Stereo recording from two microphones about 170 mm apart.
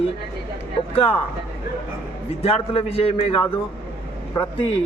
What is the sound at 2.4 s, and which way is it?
A man's voice, 35° left (ahead or behind).